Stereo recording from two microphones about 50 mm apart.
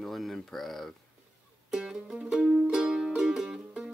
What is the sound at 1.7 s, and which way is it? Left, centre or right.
Music, centre.